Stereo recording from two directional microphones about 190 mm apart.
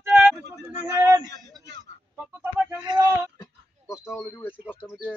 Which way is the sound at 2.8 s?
25° right (ahead or behind).